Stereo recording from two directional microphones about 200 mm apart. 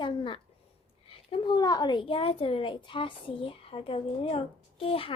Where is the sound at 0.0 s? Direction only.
25° left (ahead or behind).